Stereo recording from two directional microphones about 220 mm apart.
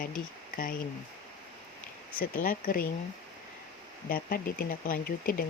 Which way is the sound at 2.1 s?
40° left (ahead or behind).